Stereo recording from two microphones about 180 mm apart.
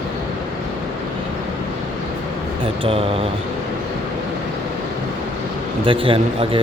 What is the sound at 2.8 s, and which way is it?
Speech, 35° right (ahead or behind).